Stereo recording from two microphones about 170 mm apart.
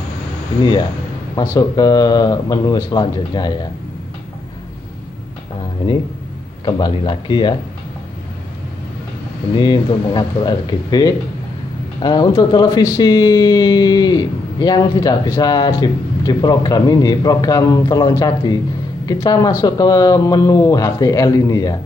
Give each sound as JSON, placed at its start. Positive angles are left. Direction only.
{"t": 1.3, "sound": "speech", "side_deg": 20}
{"t": 6.6, "sound": "speech", "side_deg": 25}
{"t": 9.6, "sound": "speech", "side_deg": 25}